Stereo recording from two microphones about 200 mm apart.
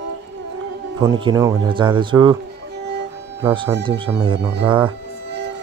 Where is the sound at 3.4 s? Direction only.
25° right (ahead or behind).